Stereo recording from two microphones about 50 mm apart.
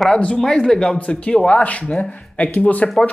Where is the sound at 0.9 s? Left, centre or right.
Left.